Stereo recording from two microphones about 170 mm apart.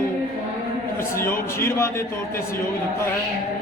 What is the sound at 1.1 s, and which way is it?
Speech, 15° left (ahead or behind).